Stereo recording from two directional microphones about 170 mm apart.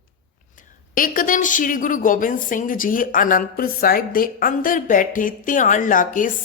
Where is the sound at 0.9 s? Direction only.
55° left (ahead or behind).